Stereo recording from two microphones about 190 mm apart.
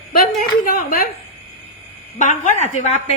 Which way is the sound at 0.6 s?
50° left (ahead or behind).